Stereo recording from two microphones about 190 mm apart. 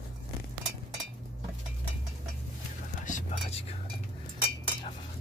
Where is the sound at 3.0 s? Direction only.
40° left (ahead or behind).